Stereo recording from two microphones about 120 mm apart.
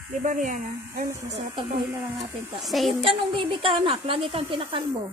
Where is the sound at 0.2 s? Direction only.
90° right.